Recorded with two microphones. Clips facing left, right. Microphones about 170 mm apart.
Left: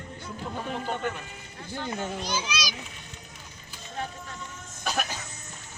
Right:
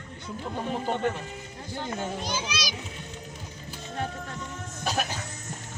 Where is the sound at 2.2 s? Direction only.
55° right (ahead or behind).